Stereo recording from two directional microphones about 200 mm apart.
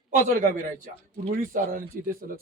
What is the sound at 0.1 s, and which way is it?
A man's voice, 40° right (ahead or behind).